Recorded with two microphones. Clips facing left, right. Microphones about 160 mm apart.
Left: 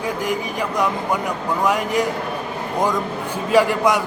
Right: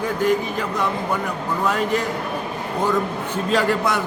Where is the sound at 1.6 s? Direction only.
15° left (ahead or behind).